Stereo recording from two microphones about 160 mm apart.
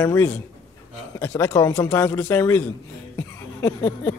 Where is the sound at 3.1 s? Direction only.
15° left (ahead or behind).